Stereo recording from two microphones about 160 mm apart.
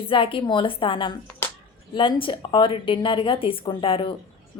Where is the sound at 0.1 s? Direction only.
30° left (ahead or behind).